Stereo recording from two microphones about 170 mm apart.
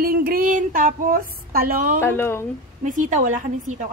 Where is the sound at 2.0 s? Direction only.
15° left (ahead or behind).